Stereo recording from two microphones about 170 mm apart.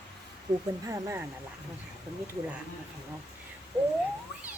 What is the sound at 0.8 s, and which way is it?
Speech, 20° right (ahead or behind).